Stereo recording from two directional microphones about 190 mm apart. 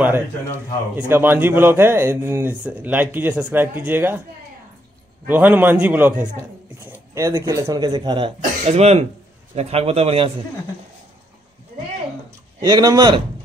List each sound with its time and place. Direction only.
0.9 s speech: 10° right (ahead or behind)
5.2 s a man's voice: 10° right (ahead or behind); by 10.3 s 30° right (ahead or behind)
12.6 s speech: 20° right (ahead or behind)